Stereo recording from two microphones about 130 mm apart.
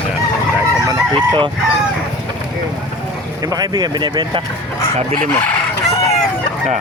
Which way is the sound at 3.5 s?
30° right (ahead or behind).